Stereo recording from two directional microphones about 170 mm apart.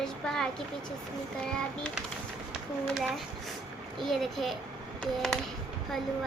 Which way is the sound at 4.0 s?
Centre (ahead or behind).